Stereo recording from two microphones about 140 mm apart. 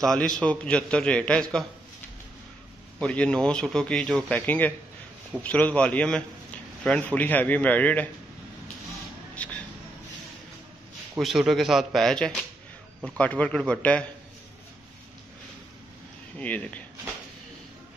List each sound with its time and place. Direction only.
0.0 s a man's voice: 5° left (ahead or behind)
3.0 s a man's voice: 5° left (ahead or behind)
9.3 s a sound: 10° left (ahead or behind)
11.1 s a man's voice: centre (ahead or behind)
16.3 s a man's voice: 10° left (ahead or behind)